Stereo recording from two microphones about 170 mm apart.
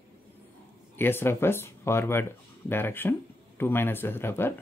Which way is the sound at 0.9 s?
15° left (ahead or behind).